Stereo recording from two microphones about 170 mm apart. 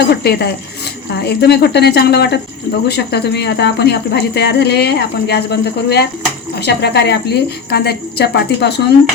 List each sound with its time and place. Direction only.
0.1 s speech: 75° left (ahead or behind)